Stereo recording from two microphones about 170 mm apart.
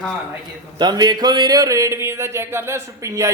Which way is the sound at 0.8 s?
25° right (ahead or behind).